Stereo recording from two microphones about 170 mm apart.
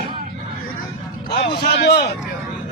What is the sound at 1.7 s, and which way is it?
Speech, 75° left (ahead or behind).